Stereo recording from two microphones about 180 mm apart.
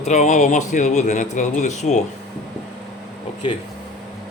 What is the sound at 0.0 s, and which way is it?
Speech, 40° left (ahead or behind).